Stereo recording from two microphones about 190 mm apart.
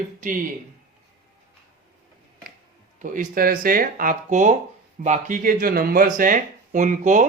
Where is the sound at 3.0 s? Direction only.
45° right (ahead or behind).